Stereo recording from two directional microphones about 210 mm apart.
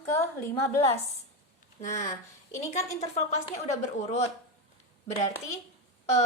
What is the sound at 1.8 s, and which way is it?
Speech, 35° left (ahead or behind).